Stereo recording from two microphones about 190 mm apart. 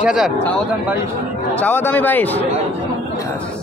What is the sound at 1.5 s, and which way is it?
Speech, 10° left (ahead or behind).